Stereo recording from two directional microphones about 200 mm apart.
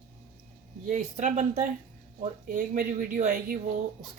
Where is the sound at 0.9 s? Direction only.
35° right (ahead or behind).